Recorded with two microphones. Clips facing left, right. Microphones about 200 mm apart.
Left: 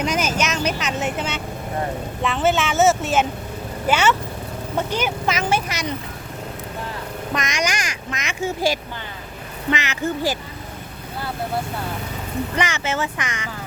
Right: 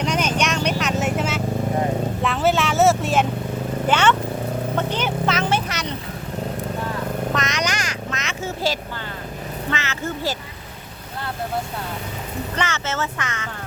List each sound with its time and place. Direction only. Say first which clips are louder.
0.0 s vehicle: even; 5° left (ahead or behind)
3.8 s speech: even; 5° left (ahead or behind)
7.3 s speech: even; 10° left (ahead or behind)
12.5 s speech: left 1 dB; 15° left (ahead or behind)